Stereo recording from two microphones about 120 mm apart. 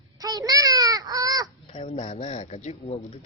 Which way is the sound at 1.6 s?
60° left (ahead or behind).